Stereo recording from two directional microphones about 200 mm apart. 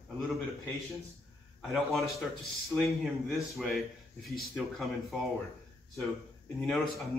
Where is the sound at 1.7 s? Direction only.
Centre (ahead or behind).